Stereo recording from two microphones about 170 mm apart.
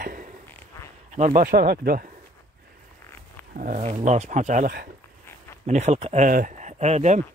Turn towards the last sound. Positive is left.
turn(degrees=-40)  # may be behind; listen again after turning